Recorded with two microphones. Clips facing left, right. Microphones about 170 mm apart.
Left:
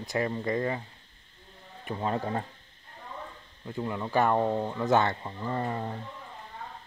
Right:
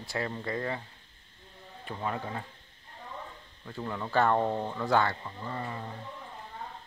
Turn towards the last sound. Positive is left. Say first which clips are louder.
# left 6 dB
turn(degrees=40)  # may be behind; listen again after turning